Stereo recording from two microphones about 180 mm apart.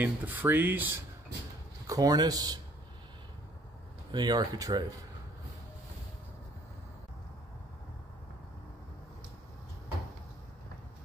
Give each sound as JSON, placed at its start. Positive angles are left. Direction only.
{"t": 0.0, "sound": "speech", "side_deg": -10}
{"t": 4.1, "sound": "speech", "side_deg": -25}